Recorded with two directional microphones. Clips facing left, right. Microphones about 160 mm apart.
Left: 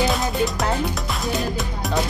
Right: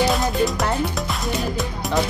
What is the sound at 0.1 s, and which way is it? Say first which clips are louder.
Music: right 2 dB; centre (ahead or behind).